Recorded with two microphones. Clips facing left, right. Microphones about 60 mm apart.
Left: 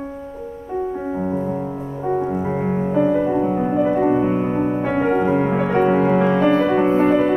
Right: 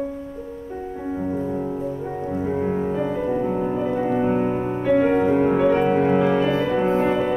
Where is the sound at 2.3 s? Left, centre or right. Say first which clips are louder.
Left 1 dB; left.